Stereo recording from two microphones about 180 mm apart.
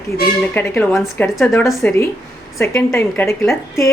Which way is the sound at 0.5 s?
10° left (ahead or behind).